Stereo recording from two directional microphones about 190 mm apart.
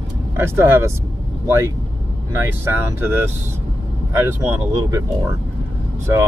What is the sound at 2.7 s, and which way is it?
Speech, 10° right (ahead or behind).